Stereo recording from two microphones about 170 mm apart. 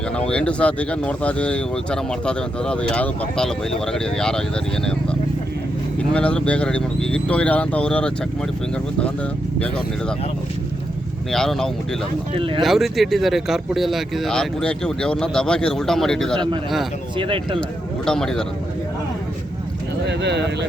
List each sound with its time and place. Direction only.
0.2 s speech: 5° left (ahead or behind)
6.0 s speech: 5° left (ahead or behind)
9.6 s speech: 5° left (ahead or behind)
11.3 s speech: centre (ahead or behind)
12.3 s speech: 30° right (ahead or behind)
12.6 s speech: centre (ahead or behind)
17.2 s speech: 30° right (ahead or behind)
17.6 s speech: 5° left (ahead or behind)
20.1 s speech: 90° right